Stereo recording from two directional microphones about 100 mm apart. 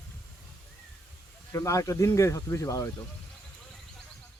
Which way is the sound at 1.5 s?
30° left (ahead or behind).